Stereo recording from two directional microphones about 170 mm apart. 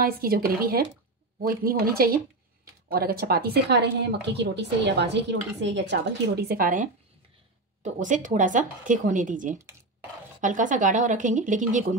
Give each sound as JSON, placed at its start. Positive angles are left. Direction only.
{"t": 0.0, "sound": "a woman's voice", "side_deg": -60}